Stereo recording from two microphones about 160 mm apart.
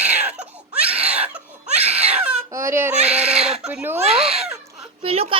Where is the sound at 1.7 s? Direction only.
40° right (ahead or behind).